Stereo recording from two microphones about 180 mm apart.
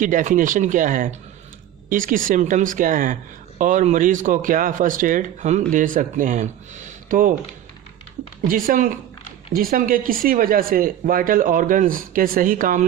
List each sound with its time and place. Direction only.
0.0 s speech: 45° right (ahead or behind)
8.4 s speech: 50° right (ahead or behind)